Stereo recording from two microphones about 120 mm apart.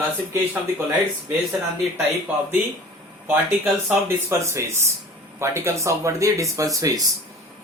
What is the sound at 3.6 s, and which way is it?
Speech, 10° right (ahead or behind).